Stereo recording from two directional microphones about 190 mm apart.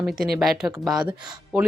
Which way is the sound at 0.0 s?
Centre (ahead or behind).